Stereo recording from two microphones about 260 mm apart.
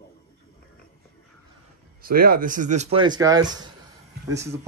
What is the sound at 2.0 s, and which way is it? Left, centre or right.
Speech, right.